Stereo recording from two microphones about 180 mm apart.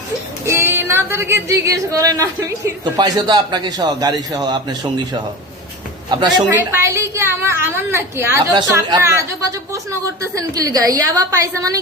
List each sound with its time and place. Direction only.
0.4 s speech: 15° right (ahead or behind)
6.5 s a woman's voice: 15° right (ahead or behind)